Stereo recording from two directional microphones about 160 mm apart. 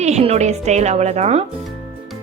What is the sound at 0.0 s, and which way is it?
A woman's voice, 40° right (ahead or behind).